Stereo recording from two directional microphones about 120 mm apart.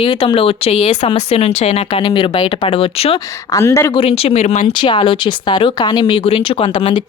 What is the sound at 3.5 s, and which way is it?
Speech, 25° left (ahead or behind).